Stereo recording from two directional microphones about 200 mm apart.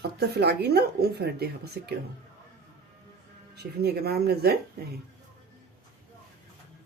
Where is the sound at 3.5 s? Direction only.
55° right (ahead or behind).